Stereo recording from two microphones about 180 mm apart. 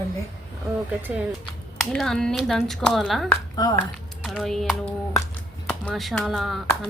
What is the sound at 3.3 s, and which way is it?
Speech, 20° left (ahead or behind).